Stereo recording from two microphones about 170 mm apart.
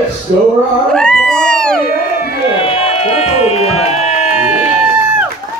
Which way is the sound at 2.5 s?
35° left (ahead or behind).